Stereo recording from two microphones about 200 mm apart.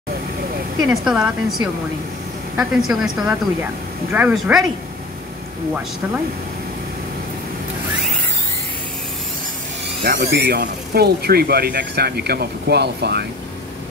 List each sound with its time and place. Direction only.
0.8 s a woman's voice: 5° right (ahead or behind)
10.0 s speech: 50° right (ahead or behind)